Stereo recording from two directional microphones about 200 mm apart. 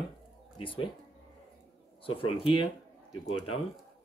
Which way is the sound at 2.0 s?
25° left (ahead or behind).